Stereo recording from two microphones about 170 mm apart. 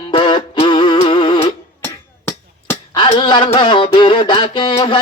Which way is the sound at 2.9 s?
30° left (ahead or behind).